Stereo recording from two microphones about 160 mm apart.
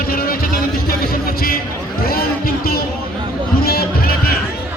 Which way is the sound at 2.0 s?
70° left (ahead or behind).